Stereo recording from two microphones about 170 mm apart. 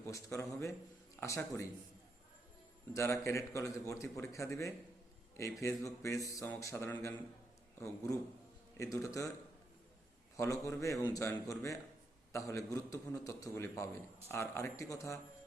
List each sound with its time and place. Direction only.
0.0 s a man's voice: 15° left (ahead or behind)
2.9 s a man's voice: 15° left (ahead or behind)
10.3 s a man's voice: 20° left (ahead or behind)